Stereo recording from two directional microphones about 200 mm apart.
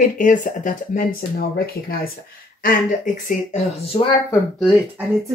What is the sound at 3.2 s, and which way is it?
Speech, 35° left (ahead or behind).